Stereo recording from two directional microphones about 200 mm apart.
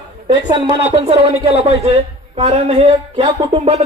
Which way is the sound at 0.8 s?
25° right (ahead or behind).